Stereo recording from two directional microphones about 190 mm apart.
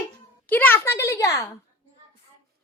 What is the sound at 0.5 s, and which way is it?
Speech, 10° left (ahead or behind).